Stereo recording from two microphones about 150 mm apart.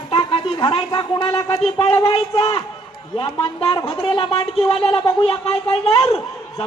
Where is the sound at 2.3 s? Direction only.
25° left (ahead or behind).